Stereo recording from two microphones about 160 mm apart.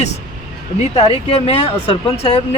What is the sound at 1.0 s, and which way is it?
Speech, 40° left (ahead or behind).